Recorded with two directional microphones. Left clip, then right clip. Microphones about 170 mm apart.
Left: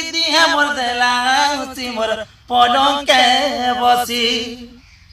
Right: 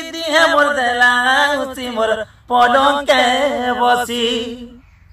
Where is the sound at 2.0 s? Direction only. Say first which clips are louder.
Right 3 dB; 35° right (ahead or behind).